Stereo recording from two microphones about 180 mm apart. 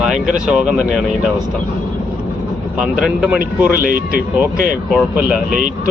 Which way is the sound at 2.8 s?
5° right (ahead or behind).